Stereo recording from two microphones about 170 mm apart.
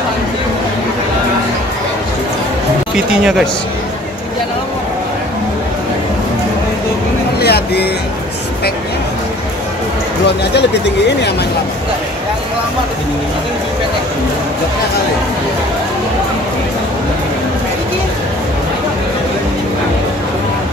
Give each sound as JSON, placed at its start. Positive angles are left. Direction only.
{"t": 2.9, "sound": "speech", "side_deg": -5}
{"t": 7.3, "sound": "a sound", "side_deg": 70}
{"t": 10.5, "sound": "speech", "side_deg": 85}